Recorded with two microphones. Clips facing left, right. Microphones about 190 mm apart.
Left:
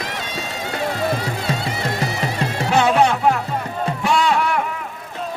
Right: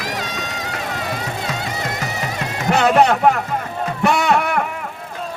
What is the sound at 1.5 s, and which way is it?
Music, 30° left (ahead or behind).